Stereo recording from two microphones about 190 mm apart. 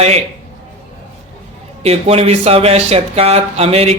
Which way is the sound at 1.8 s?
30° right (ahead or behind).